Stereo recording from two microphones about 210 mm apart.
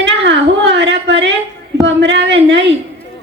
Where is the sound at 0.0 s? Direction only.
60° right (ahead or behind).